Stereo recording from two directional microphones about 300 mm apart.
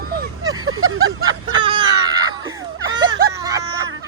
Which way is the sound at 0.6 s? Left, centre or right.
Right.